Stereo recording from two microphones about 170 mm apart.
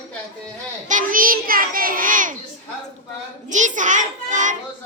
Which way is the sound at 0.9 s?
50° right (ahead or behind).